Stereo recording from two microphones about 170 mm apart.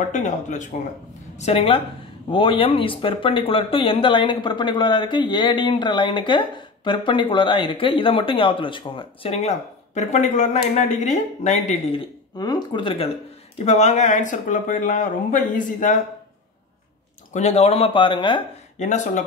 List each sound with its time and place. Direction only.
0.1 s speech: 45° left (ahead or behind)
13.7 s speech: 40° left (ahead or behind)
17.3 s speech: 40° left (ahead or behind)
18.8 s speech: 45° left (ahead or behind)